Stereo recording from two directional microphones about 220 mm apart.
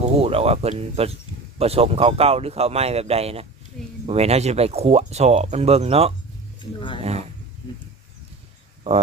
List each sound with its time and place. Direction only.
0.0 s speech: 25° right (ahead or behind)
6.7 s speech: 20° left (ahead or behind)
7.0 s a sound: 30° right (ahead or behind)